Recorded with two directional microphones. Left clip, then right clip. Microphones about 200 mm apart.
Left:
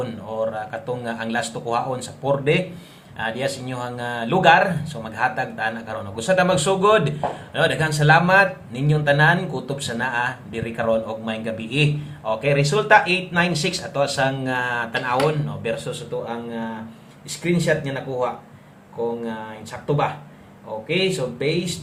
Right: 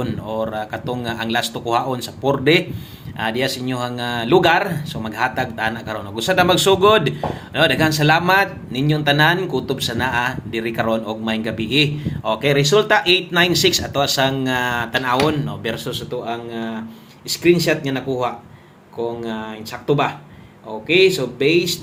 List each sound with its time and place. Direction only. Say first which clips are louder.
0.0 s speech: right 1 dB; 30° right (ahead or behind)